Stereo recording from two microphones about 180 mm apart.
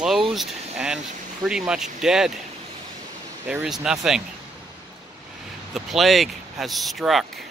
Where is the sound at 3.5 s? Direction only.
5° right (ahead or behind).